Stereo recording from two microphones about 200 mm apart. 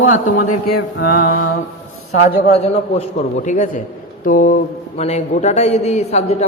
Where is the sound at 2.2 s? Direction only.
30° left (ahead or behind).